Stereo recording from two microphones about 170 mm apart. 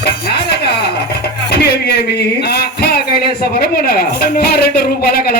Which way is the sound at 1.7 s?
75° left (ahead or behind).